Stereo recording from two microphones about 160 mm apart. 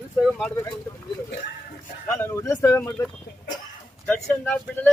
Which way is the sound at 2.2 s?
15° left (ahead or behind).